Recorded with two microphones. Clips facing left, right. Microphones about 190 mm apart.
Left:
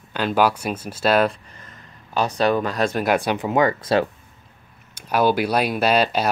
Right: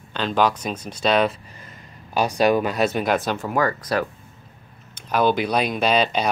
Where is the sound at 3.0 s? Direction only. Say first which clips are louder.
Left 2 dB; 10° left (ahead or behind).